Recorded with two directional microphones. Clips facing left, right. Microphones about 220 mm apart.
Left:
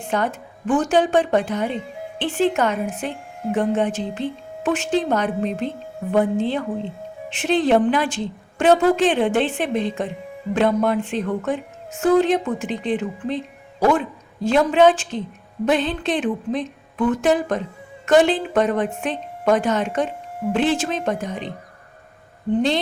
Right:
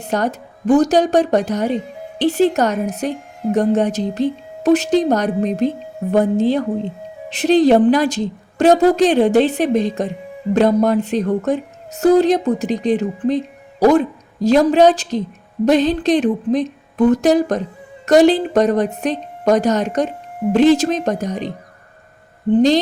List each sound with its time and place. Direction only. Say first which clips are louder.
0.0 s a woman's voice: right 3 dB; 40° right (ahead or behind)
22.5 s a woman's voice: right 7 dB; 40° right (ahead or behind)